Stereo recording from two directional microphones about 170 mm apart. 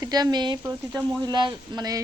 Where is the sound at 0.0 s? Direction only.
25° right (ahead or behind).